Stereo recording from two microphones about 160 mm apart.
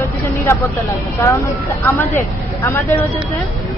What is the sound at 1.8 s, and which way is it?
A woman's voice, 15° left (ahead or behind).